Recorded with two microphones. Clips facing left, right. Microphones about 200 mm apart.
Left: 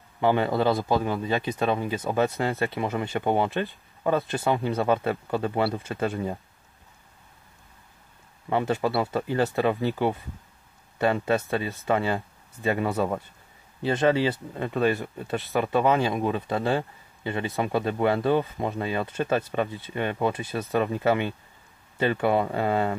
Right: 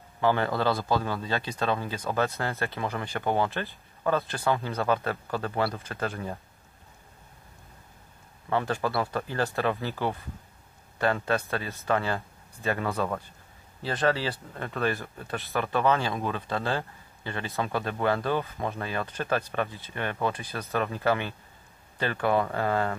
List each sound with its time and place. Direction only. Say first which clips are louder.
0.2 s speech: left 3 dB; 20° left (ahead or behind)
8.5 s speech: left 3 dB; 20° left (ahead or behind)